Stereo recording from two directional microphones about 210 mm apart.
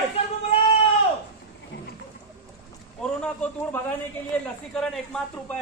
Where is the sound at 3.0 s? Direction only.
5° left (ahead or behind).